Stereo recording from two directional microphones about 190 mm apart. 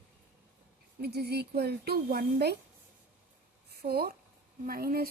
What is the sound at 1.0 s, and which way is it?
Speech, 55° right (ahead or behind).